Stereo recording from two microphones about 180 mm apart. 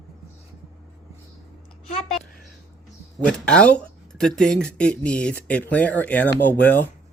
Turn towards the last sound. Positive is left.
turn(degrees=10)  # may be behind; listen again after turning